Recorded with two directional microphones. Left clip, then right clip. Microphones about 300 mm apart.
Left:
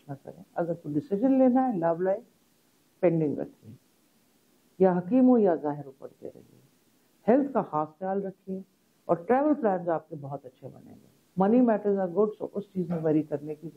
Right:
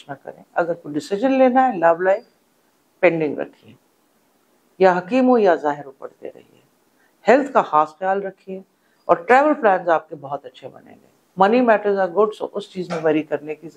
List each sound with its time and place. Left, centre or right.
0.0 s a man's voice: centre
4.7 s a man's voice: centre